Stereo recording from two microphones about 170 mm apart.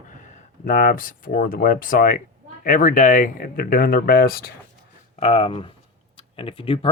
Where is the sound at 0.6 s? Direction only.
50° left (ahead or behind).